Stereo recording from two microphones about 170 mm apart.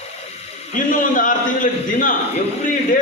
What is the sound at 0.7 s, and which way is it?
A man's voice, 50° left (ahead or behind).